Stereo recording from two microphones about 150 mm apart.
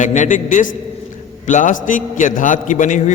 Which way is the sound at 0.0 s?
55° left (ahead or behind).